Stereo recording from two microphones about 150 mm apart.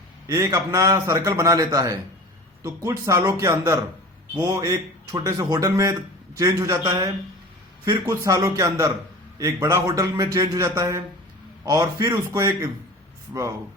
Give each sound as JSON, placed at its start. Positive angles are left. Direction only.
{"t": 0.3, "sound": "speech", "side_deg": -20}